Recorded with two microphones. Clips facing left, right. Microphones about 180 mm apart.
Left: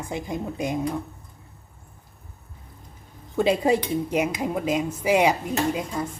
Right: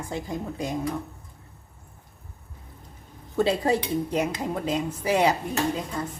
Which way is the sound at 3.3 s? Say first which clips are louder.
Left 2 dB; 15° left (ahead or behind).